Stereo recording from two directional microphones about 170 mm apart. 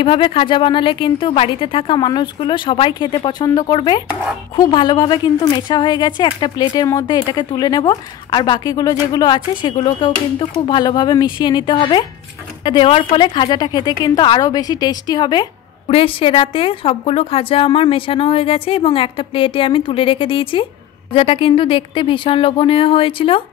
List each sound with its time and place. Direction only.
0.0 s a woman's voice: 30° left (ahead or behind)